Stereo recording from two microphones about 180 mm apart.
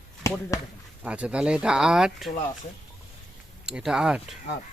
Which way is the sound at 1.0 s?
5° right (ahead or behind).